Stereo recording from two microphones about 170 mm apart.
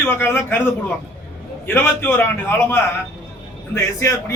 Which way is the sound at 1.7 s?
10° left (ahead or behind).